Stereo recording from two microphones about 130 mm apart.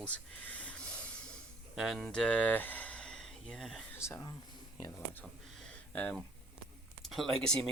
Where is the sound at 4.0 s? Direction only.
20° left (ahead or behind).